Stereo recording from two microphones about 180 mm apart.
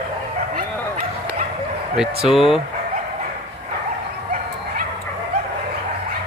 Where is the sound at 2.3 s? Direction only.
Centre (ahead or behind).